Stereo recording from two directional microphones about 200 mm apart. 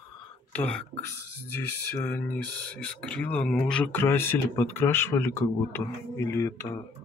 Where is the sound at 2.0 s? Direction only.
10° left (ahead or behind).